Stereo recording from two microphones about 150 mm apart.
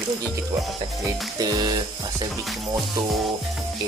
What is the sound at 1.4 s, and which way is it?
Speech, 25° right (ahead or behind).